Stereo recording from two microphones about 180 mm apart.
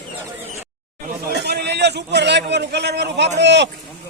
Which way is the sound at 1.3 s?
65° right (ahead or behind).